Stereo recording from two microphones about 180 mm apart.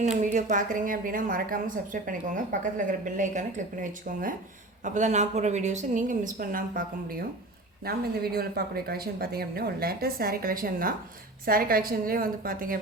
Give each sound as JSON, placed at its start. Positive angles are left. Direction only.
{"t": 0.0, "sound": "a woman's voice", "side_deg": -45}
{"t": 4.8, "sound": "a woman's voice", "side_deg": -40}